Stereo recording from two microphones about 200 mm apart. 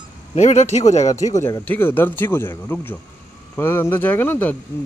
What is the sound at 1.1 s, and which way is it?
Speech, 15° left (ahead or behind).